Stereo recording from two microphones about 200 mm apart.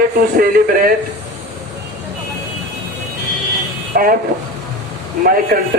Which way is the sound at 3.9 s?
45° right (ahead or behind).